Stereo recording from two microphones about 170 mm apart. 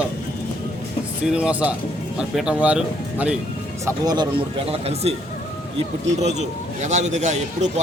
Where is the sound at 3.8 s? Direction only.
25° right (ahead or behind).